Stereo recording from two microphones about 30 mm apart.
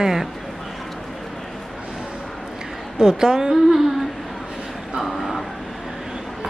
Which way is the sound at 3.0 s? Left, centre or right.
Right.